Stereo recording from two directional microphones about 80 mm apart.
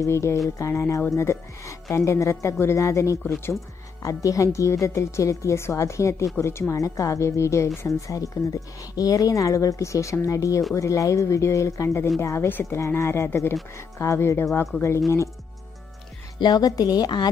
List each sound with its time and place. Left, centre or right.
0.0 s a woman's voice: left
16.3 s a woman's voice: left